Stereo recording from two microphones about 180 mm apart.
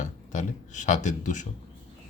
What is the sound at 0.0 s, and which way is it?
Speech, 40° left (ahead or behind).